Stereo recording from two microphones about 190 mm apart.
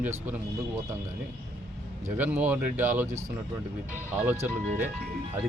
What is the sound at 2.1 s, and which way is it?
A man's voice, 10° right (ahead or behind).